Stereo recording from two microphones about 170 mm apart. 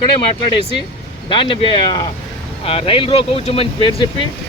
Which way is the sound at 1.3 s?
30° left (ahead or behind).